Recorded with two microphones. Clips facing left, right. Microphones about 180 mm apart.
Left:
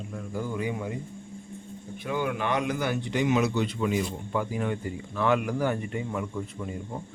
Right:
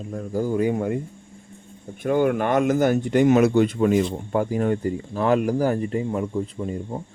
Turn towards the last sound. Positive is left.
turn(degrees=-30)  # may be behind; listen again after turning